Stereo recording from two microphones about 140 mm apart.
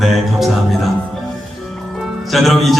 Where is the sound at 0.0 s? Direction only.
Centre (ahead or behind).